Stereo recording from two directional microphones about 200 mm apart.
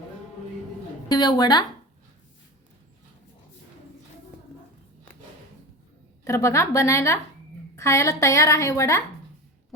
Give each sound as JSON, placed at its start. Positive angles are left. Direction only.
{"t": 1.0, "sound": "a woman's voice", "side_deg": 20}
{"t": 6.2, "sound": "a woman's voice", "side_deg": 15}